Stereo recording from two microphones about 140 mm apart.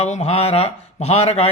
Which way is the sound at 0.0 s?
50° left (ahead or behind).